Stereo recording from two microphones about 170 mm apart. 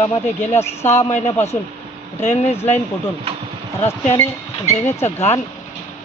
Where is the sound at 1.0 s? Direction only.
40° left (ahead or behind).